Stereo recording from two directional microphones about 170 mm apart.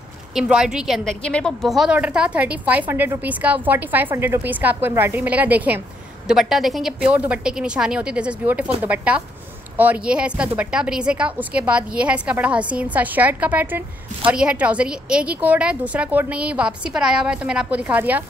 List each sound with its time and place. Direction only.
0.3 s a woman's voice: 5° right (ahead or behind)